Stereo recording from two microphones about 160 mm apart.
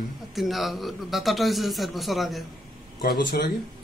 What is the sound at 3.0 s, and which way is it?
Speech, 80° left.